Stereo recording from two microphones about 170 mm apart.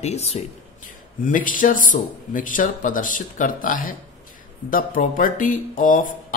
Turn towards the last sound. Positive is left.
turn(degrees=55)  # may be behind; listen again after turning